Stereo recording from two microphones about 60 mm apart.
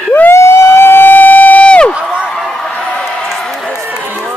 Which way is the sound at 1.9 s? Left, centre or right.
Centre.